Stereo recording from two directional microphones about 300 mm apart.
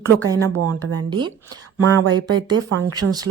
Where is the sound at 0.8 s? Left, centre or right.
Right.